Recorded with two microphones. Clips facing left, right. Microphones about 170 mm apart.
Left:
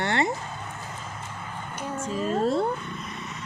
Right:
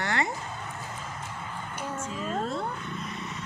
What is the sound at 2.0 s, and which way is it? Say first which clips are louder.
Speech: left 8 dB; 35° left (ahead or behind).